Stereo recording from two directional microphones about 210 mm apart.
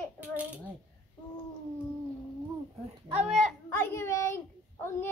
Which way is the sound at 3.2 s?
Centre (ahead or behind).